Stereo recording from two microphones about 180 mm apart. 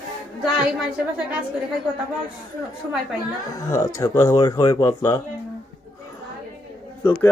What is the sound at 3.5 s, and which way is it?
Speech, 20° left (ahead or behind).